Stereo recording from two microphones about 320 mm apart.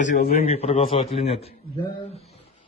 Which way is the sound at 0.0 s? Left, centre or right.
Left.